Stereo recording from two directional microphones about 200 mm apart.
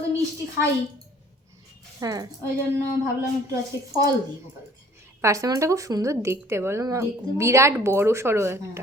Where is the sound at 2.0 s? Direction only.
15° right (ahead or behind).